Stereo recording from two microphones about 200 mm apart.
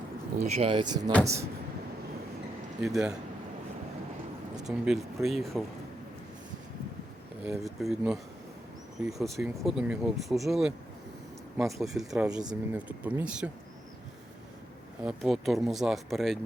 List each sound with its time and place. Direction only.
0.4 s speech: 30° right (ahead or behind); by 1.5 s 15° right (ahead or behind)
2.8 s speech: centre (ahead or behind)
4.5 s speech: centre (ahead or behind)
7.4 s speech: centre (ahead or behind)
15.0 s speech: centre (ahead or behind)